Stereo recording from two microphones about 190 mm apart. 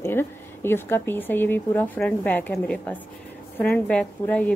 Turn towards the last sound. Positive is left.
turn(degrees=10)  # may be behind; listen again after turning